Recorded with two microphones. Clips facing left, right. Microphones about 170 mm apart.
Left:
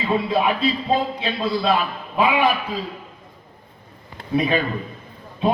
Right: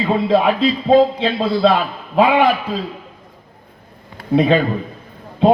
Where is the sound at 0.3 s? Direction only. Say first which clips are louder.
Right 5 dB; 70° right (ahead or behind).